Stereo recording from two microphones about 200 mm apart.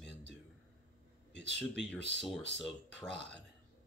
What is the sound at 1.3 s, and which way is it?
Speech, 60° left (ahead or behind).